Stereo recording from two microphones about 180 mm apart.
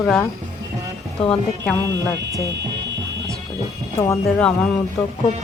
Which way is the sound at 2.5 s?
75° right (ahead or behind).